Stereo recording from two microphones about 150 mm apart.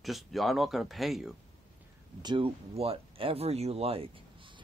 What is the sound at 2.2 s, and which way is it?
Speech, 35° right (ahead or behind).